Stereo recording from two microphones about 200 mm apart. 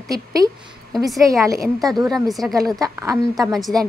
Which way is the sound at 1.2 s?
15° right (ahead or behind).